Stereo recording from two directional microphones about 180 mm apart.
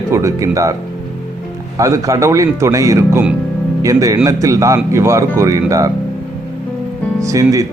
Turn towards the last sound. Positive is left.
turn(degrees=-20)  # may be behind; listen again after turning